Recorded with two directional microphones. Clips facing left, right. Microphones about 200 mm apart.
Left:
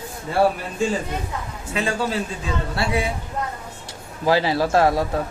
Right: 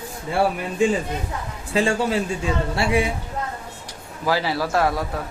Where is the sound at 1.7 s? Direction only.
30° right (ahead or behind).